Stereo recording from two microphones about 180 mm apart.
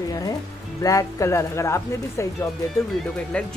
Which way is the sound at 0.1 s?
20° left (ahead or behind).